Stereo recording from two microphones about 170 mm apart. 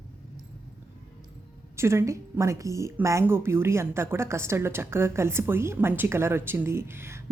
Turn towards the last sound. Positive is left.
turn(degrees=-15)  # may be behind; listen again after turning